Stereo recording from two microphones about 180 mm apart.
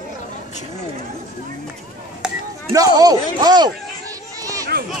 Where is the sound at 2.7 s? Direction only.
20° right (ahead or behind).